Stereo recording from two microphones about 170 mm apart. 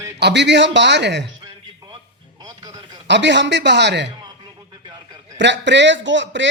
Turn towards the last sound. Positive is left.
turn(degrees=-90)